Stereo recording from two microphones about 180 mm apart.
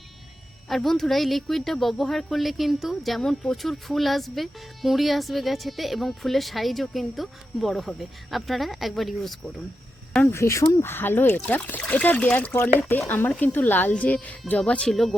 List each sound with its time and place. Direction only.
0.7 s speech: centre (ahead or behind)
10.1 s speech: 10° left (ahead or behind)